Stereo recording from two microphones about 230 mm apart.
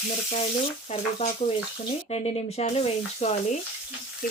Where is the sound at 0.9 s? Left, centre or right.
Left.